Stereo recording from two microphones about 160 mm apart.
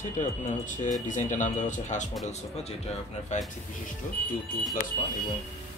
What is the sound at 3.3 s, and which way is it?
Speech, 50° left (ahead or behind).